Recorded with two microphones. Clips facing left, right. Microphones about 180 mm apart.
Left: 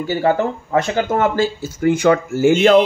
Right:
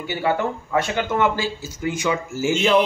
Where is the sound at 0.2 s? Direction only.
45° left (ahead or behind).